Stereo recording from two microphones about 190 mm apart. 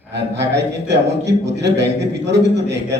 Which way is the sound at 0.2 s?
65° right (ahead or behind).